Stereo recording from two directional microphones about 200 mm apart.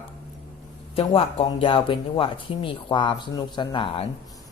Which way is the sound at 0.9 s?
30° left (ahead or behind).